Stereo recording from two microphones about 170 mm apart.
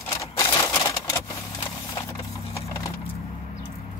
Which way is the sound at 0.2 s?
20° left (ahead or behind).